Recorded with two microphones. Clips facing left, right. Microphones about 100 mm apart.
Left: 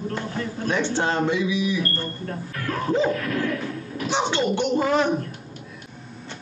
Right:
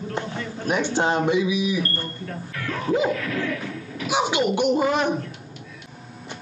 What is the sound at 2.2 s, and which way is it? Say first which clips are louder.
Speech: left 2 dB; 40° left (ahead or behind).